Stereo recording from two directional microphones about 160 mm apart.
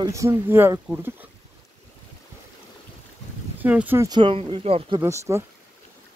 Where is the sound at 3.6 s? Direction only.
10° right (ahead or behind).